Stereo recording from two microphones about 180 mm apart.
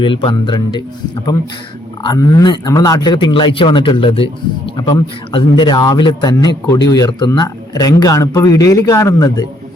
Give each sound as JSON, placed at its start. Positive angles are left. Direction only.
{"t": 0.0, "sound": "a man's voice", "side_deg": 25}